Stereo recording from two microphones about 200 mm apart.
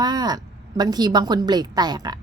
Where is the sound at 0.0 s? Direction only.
20° right (ahead or behind).